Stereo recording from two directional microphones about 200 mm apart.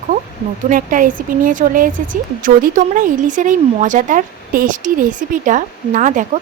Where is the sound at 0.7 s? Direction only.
40° right (ahead or behind).